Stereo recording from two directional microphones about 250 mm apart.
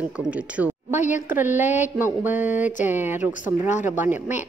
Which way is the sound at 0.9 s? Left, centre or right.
Left.